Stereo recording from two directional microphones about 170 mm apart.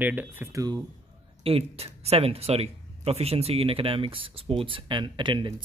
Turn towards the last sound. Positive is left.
turn(degrees=-30)  # may be behind; listen again after turning